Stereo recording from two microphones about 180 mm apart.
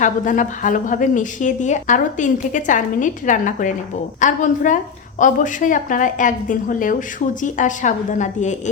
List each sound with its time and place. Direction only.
0.0 s a woman's voice: 45° left (ahead or behind)